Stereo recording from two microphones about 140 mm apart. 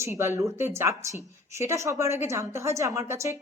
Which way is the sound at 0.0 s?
20° right (ahead or behind).